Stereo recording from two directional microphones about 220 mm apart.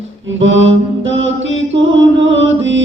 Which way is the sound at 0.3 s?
60° right (ahead or behind).